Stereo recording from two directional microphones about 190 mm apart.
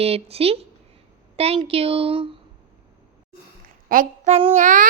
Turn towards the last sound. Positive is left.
turn(degrees=-40)  # may be behind; listen again after turning